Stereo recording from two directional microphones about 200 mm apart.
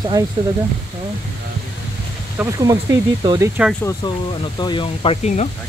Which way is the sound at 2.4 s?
15° right (ahead or behind).